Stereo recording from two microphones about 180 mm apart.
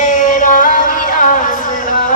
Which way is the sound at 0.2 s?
45° left (ahead or behind).